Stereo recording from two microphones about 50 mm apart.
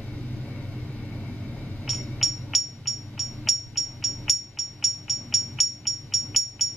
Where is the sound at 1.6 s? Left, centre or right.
Left.